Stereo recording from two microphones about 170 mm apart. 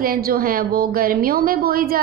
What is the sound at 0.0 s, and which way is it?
A woman's voice, 60° right (ahead or behind).